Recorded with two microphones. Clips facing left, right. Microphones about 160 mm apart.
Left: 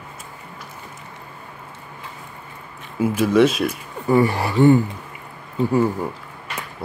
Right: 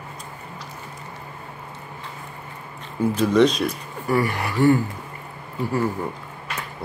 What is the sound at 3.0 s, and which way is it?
Speech, 5° left (ahead or behind).